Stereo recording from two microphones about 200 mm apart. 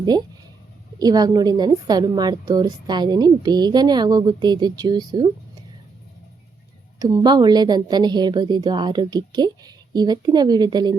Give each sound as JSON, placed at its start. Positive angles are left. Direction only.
{"t": 0.9, "sound": "a woman's voice", "side_deg": -20}
{"t": 7.0, "sound": "a woman's voice", "side_deg": -20}